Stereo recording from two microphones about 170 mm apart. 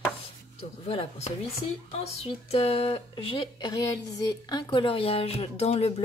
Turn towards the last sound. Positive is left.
turn(degrees=35)  # may be behind; listen again after turning